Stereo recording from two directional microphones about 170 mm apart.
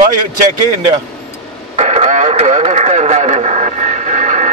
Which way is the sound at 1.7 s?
40° right (ahead or behind).